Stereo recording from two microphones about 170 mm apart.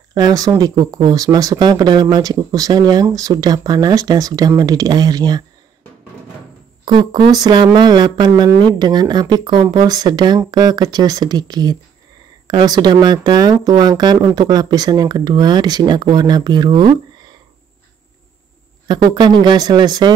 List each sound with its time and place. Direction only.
0.1 s speech: 20° right (ahead or behind)
6.8 s speech: 25° right (ahead or behind)
18.9 s speech: 25° right (ahead or behind)